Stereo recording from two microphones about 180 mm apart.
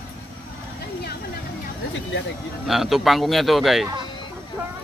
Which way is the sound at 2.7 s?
Centre (ahead or behind).